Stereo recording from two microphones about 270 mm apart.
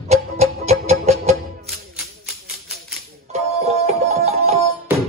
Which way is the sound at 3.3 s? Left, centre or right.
Right.